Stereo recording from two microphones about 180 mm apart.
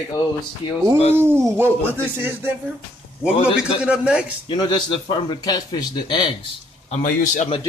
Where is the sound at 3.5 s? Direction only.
5° right (ahead or behind).